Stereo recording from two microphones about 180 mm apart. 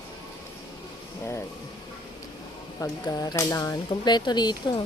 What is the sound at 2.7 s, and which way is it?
Speech, 20° left (ahead or behind).